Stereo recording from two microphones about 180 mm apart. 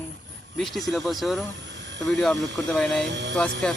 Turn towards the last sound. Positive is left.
turn(degrees=0)  # may be behind; listen again after turning